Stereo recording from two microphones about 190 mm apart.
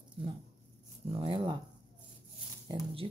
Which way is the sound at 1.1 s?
25° right (ahead or behind).